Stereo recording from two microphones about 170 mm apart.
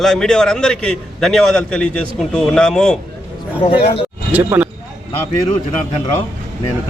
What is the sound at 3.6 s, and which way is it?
Speech, 35° left (ahead or behind).